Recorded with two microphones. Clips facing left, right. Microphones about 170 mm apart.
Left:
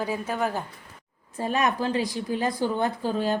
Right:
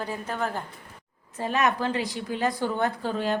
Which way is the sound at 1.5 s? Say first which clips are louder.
Even; 35° left (ahead or behind).